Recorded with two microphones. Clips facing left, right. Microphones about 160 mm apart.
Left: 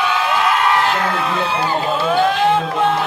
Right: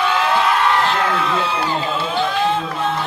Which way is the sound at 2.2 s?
60° left (ahead or behind).